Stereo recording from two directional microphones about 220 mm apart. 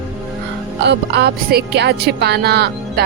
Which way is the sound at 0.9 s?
50° right (ahead or behind).